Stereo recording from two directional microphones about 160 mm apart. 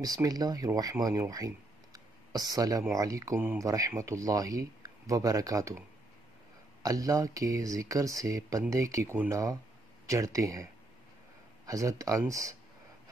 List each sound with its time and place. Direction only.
0.0 s speech: 25° right (ahead or behind)